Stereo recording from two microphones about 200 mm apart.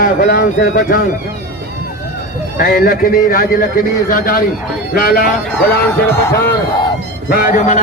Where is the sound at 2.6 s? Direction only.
45° left (ahead or behind).